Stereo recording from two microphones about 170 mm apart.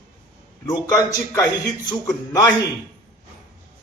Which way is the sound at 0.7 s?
20° left (ahead or behind).